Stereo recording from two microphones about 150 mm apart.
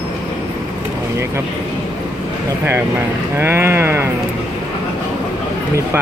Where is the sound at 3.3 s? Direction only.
15° right (ahead or behind).